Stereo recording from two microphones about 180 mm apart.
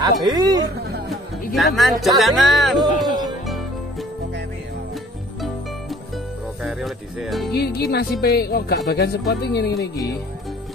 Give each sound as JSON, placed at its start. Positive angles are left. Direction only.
{"t": 0.0, "sound": "speech", "side_deg": -25}
{"t": 1.5, "sound": "speech", "side_deg": 0}
{"t": 6.6, "sound": "music", "side_deg": 0}
{"t": 7.5, "sound": "speech", "side_deg": 60}